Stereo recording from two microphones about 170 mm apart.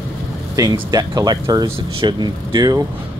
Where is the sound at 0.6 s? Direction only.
20° right (ahead or behind).